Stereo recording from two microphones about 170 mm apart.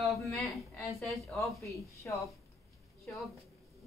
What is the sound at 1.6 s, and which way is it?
Speech, 20° left (ahead or behind).